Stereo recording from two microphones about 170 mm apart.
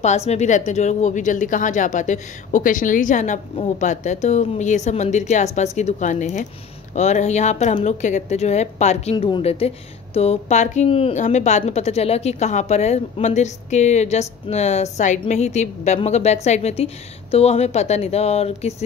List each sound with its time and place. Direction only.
0.0 s a woman's voice: 40° left (ahead or behind)
9.1 s a woman's voice: 30° left (ahead or behind)